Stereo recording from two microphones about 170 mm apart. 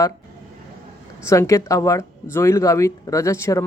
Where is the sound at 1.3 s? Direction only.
20° left (ahead or behind).